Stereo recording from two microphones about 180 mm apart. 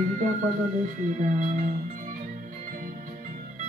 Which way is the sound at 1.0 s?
45° right (ahead or behind).